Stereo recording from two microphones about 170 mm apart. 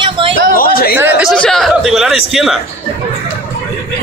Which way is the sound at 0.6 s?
60° left (ahead or behind).